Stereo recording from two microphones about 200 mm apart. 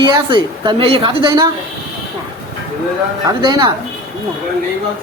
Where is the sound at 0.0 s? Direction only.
20° right (ahead or behind).